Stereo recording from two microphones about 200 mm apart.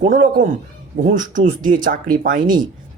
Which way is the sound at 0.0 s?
40° right (ahead or behind).